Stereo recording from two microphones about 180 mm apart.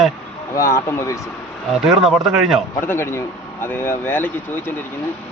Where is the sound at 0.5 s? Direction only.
15° left (ahead or behind).